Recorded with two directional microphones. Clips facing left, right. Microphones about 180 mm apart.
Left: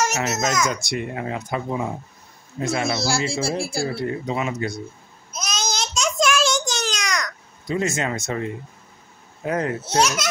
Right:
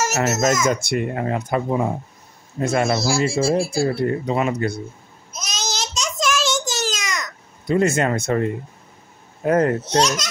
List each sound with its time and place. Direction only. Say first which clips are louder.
0.2 s a child's voice: right 4 dB; 45° right (ahead or behind)
5.3 s child singing: left 1 dB; centre (ahead or behind)
7.6 s a child's voice: right 6 dB; 55° right (ahead or behind)